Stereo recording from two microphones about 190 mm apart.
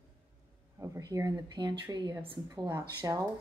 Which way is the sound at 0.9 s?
15° right (ahead or behind).